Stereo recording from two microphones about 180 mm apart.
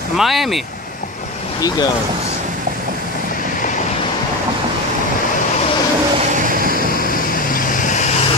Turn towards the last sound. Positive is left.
turn(degrees=-55)  # may be behind; listen again after turning